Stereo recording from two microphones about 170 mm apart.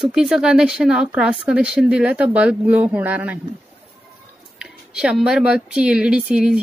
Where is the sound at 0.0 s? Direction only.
5° right (ahead or behind).